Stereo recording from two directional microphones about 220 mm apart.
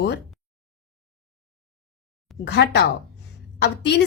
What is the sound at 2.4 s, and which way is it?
A woman's voice, 50° left (ahead or behind).